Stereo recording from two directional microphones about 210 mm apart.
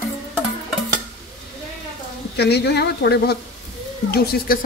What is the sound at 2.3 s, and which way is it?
Speech, 50° left (ahead or behind).